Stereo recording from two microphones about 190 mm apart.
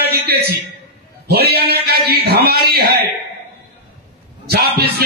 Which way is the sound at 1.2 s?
55° right (ahead or behind).